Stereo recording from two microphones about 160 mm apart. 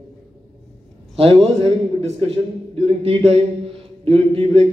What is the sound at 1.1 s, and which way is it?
A man's voice, 35° right (ahead or behind).